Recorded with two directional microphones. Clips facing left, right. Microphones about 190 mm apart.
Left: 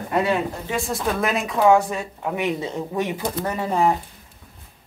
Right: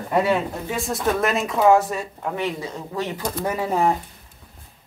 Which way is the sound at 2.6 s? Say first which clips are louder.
Left 3 dB; 20° left (ahead or behind).